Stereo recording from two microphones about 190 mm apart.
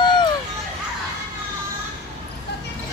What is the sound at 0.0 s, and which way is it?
Children playing, 25° left (ahead or behind).